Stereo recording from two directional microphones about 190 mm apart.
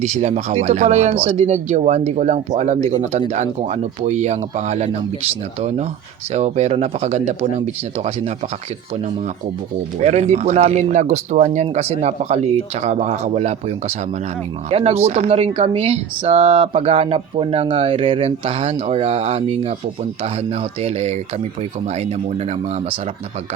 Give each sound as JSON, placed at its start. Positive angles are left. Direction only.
{"t": 0.0, "sound": "speech", "side_deg": -40}
{"t": 10.0, "sound": "speech", "side_deg": -35}